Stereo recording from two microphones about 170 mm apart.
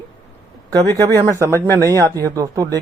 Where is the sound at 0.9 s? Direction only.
20° right (ahead or behind).